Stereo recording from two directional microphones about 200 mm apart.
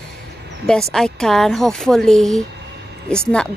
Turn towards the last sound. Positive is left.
turn(degrees=5)  # may be behind; listen again after turning